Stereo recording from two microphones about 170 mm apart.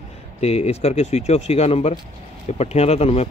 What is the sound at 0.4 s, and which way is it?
Speech, 40° left (ahead or behind).